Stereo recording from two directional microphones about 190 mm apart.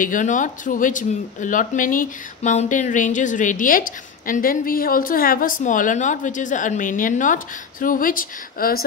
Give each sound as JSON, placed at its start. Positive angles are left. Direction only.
{"t": 0.0, "sound": "speech", "side_deg": 45}